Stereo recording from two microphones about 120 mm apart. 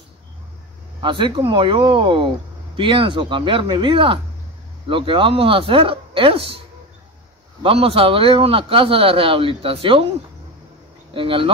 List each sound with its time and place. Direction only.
1.0 s a man's voice: 40° right (ahead or behind)
7.6 s a man's voice: 50° right (ahead or behind)
11.1 s a man's voice: 45° right (ahead or behind)